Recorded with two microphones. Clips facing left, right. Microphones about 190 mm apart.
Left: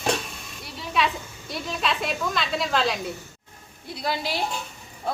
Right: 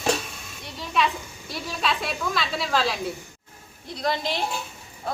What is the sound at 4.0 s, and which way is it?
Speech, 5° left (ahead or behind).